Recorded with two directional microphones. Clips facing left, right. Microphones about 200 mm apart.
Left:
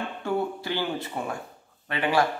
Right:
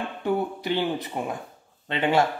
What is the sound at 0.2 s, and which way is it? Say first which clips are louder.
Speech: right 2 dB; 20° right (ahead or behind).